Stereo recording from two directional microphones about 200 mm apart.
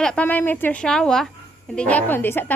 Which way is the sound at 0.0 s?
5° left (ahead or behind).